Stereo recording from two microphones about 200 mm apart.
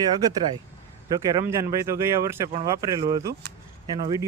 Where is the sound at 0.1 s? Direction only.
20° right (ahead or behind).